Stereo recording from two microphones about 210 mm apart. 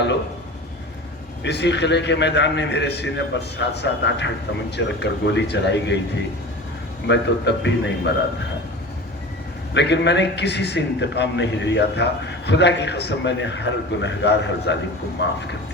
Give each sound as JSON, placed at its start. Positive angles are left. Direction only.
{"t": 1.5, "sound": "a man's voice", "side_deg": 55}
{"t": 7.1, "sound": "a man's voice", "side_deg": 55}
{"t": 9.7, "sound": "a man's voice", "side_deg": 55}